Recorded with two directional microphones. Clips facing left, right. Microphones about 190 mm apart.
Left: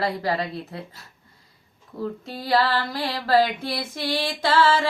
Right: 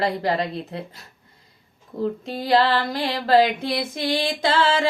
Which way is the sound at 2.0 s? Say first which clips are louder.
Right 5 dB; 20° right (ahead or behind).